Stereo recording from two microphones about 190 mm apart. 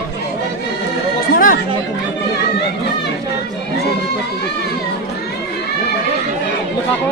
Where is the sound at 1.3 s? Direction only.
45° left (ahead or behind).